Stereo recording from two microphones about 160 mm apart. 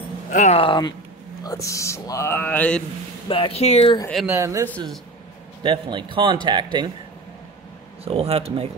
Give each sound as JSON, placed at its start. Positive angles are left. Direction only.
{"t": 0.3, "sound": "speech", "side_deg": 50}
{"t": 0.6, "sound": "speech", "side_deg": 30}
{"t": 3.3, "sound": "speech", "side_deg": 35}
{"t": 4.3, "sound": "speech", "side_deg": -20}
{"t": 4.6, "sound": "speech", "side_deg": 10}
{"t": 5.6, "sound": "a man's voice", "side_deg": -30}
{"t": 8.0, "sound": "a man's voice", "side_deg": -40}